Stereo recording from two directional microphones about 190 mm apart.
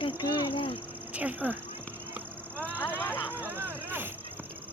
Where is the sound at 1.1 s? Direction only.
10° right (ahead or behind).